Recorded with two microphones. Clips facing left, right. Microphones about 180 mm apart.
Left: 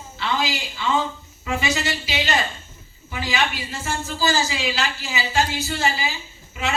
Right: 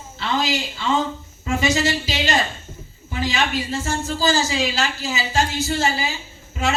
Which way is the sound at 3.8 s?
40° right (ahead or behind).